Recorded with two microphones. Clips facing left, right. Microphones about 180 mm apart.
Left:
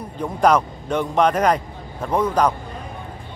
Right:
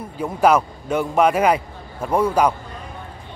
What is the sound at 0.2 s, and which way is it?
A man's voice, 5° right (ahead or behind).